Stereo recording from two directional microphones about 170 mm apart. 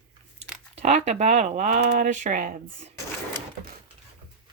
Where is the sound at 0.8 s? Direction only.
40° right (ahead or behind).